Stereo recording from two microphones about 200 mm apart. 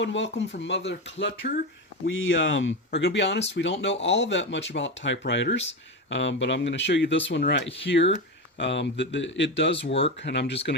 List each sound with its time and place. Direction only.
0.0 s speech: 65° left (ahead or behind)
2.0 s speech: 75° left (ahead or behind); by 10.8 s 60° left (ahead or behind)